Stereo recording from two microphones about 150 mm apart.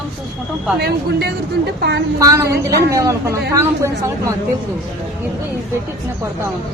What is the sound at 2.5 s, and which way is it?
Speech, 90° right.